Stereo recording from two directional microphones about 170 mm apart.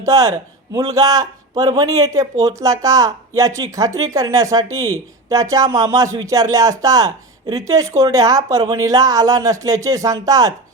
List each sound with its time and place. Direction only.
0.0 s speech: 20° right (ahead or behind)